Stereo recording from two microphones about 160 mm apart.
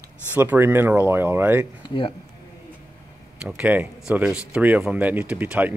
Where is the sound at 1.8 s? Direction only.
30° left (ahead or behind).